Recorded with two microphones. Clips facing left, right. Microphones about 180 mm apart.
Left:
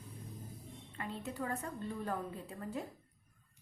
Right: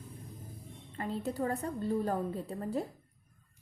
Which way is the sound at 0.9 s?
35° right (ahead or behind).